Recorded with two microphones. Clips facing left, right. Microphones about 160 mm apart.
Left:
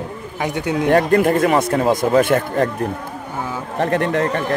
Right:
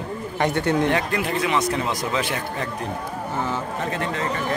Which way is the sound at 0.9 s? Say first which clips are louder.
Left 9 dB; 50° left (ahead or behind).